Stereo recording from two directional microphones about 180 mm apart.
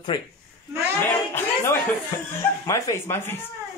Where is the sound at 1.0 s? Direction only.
10° left (ahead or behind).